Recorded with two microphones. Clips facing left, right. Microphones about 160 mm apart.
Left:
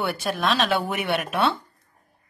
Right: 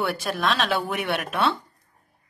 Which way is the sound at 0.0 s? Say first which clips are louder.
Even; centre (ahead or behind).